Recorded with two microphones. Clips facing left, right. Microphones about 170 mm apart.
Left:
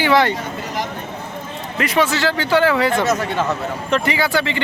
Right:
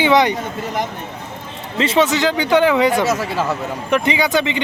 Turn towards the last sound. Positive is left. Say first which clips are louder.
# right 2 dB
turn(degrees=-20)  # may be behind; listen again after turning